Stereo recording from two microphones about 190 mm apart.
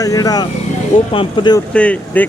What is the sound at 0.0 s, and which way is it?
Speech, 20° left (ahead or behind).